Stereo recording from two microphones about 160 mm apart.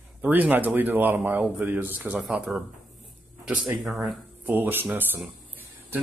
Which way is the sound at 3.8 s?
Centre (ahead or behind).